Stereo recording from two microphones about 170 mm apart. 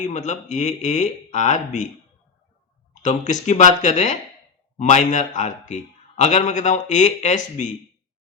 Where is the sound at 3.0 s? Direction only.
45° left (ahead or behind).